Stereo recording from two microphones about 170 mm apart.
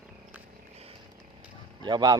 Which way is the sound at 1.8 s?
25° right (ahead or behind).